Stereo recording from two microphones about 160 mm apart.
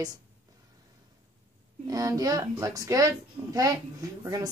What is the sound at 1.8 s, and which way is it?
A woman's voice, 20° right (ahead or behind).